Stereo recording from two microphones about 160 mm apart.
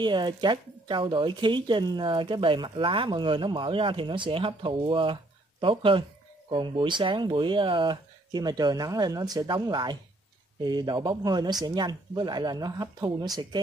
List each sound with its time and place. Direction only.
0.0 s speech: 30° right (ahead or behind)